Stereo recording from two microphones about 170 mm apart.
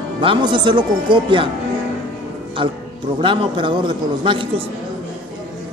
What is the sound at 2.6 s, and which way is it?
Speech, 35° right (ahead or behind).